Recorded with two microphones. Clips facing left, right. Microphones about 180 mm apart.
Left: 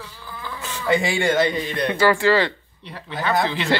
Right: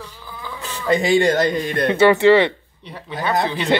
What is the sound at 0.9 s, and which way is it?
Speech, 35° right (ahead or behind).